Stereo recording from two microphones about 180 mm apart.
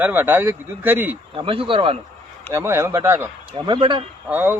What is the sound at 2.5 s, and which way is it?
Speech, 15° right (ahead or behind).